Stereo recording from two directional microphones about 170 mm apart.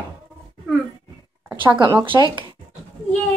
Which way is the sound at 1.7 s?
30° right (ahead or behind).